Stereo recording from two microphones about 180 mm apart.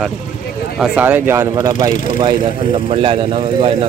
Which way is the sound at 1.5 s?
25° right (ahead or behind).